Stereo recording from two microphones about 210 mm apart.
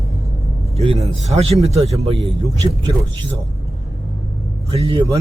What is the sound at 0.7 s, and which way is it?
A man's voice, 30° right (ahead or behind).